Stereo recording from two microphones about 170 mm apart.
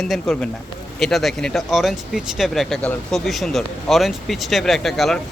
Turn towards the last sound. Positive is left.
turn(degrees=0)  # may be behind; listen again after turning